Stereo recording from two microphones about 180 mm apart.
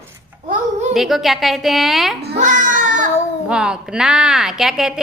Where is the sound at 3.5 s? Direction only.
5° right (ahead or behind).